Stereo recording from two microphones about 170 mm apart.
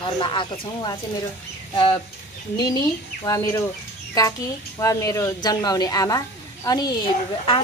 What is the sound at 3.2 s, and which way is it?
Speech, 20° left (ahead or behind).